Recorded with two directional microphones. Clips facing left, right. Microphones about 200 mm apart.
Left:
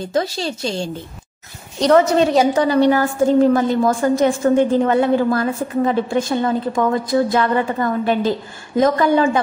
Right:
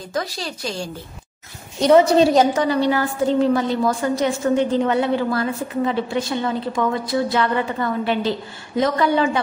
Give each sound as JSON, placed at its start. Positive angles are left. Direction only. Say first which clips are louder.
{"t": 0.0, "sound": "a woman's voice", "louder": "left 6 dB", "side_deg": 25}
{"t": 1.8, "sound": "a woman's voice", "louder": "even", "side_deg": -10}
{"t": 2.8, "sound": "a woman's voice", "louder": "left 5 dB", "side_deg": 45}